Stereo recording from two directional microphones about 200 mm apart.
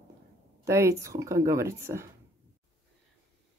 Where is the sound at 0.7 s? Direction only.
15° right (ahead or behind).